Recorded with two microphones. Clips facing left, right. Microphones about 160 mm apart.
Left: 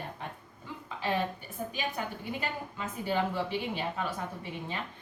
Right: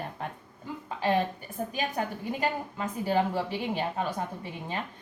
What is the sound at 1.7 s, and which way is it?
A woman's voice, 40° right (ahead or behind).